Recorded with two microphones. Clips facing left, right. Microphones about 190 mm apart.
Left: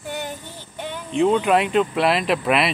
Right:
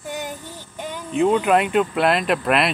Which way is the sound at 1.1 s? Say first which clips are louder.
Even; centre (ahead or behind).